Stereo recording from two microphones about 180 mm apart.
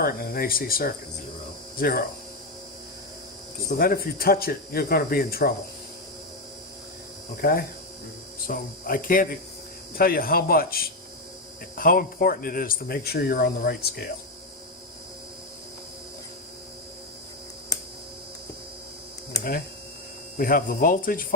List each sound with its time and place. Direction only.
0.0 s speech: 55° left (ahead or behind)
3.7 s speech: 55° left (ahead or behind)
7.4 s speech: 60° left (ahead or behind)
20.3 s speech: 55° left (ahead or behind)